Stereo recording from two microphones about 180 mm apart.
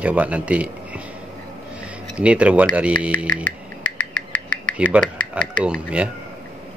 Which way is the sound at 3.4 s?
50° right (ahead or behind).